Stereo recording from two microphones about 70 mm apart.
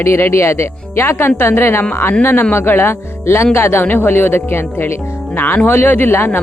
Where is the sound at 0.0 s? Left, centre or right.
Left.